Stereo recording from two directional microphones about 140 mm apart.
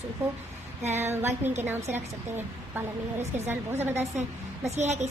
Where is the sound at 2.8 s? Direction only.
15° right (ahead or behind).